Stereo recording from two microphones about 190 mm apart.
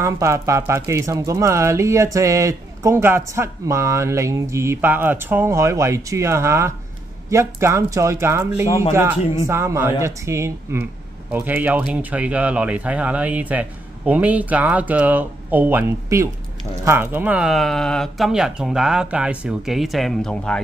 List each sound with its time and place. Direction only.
0.0 s speech: 15° right (ahead or behind); by 20.6 s 5° left (ahead or behind)